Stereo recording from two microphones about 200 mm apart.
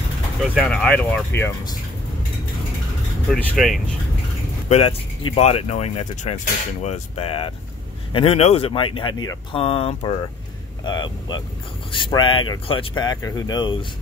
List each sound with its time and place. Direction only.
0.4 s speech: centre (ahead or behind)
3.3 s speech: centre (ahead or behind)
4.6 s speech: 30° left (ahead or behind)